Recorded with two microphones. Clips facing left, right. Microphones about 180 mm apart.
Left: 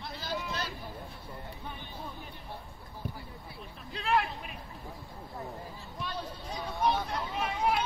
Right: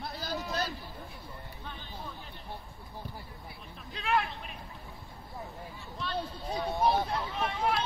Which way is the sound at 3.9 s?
Centre (ahead or behind).